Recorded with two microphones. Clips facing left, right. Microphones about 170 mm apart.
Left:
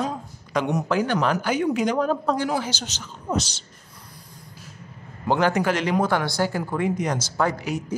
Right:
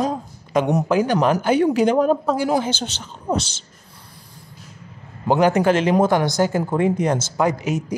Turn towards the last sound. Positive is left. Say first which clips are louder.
# right 4 dB
turn(degrees=-20)  # may be behind; listen again after turning